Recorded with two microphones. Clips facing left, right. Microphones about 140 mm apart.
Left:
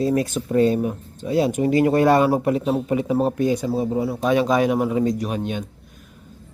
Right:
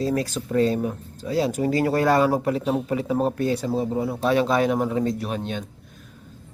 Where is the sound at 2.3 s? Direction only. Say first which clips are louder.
Left 3 dB; 10° left (ahead or behind).